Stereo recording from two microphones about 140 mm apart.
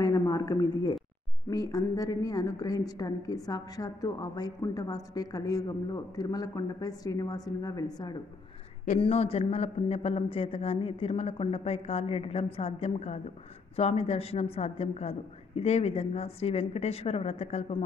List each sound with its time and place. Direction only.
0.0 s a woman's voice: 25° left (ahead or behind)
9.0 s speech: 45° left (ahead or behind)